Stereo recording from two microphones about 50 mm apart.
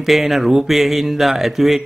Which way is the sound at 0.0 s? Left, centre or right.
Centre.